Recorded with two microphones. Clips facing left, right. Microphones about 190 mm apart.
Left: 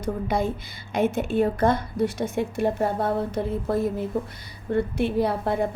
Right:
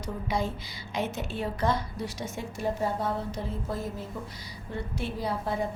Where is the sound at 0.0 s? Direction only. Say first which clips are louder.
Left 6 dB; 55° left (ahead or behind).